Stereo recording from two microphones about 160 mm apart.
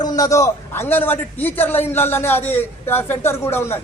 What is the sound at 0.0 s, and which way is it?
A man's voice, 25° left (ahead or behind).